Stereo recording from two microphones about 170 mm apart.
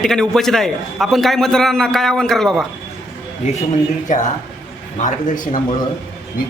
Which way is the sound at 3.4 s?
45° left (ahead or behind).